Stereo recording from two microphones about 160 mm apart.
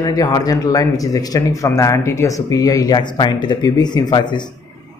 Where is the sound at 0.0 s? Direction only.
25° left (ahead or behind).